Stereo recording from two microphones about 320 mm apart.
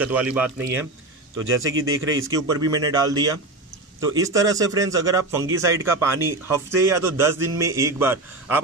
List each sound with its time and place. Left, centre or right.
0.0 s speech: centre
1.4 s speech: right
2.3 s speech: centre